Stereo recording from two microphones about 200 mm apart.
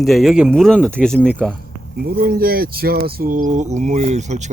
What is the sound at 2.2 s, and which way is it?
Speech, 50° right (ahead or behind).